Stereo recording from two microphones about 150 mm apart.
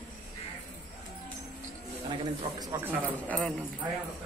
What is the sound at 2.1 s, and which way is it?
Speech, 30° right (ahead or behind).